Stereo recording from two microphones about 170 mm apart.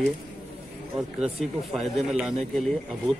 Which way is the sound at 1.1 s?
35° right (ahead or behind).